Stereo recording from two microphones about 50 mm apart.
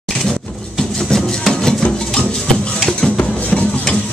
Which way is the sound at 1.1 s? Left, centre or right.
Centre.